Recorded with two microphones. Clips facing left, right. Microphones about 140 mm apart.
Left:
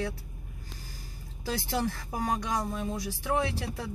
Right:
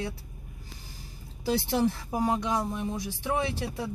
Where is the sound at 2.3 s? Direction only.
25° right (ahead or behind).